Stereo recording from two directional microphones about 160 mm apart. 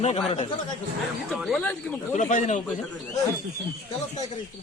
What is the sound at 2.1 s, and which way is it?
Speech, 50° left (ahead or behind).